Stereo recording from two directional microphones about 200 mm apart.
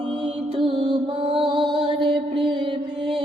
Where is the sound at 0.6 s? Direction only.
25° right (ahead or behind).